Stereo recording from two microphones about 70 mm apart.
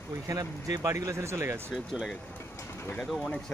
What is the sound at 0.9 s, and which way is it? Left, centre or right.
Speech, right.